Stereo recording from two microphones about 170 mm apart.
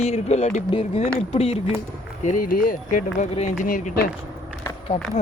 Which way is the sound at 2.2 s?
55° left (ahead or behind).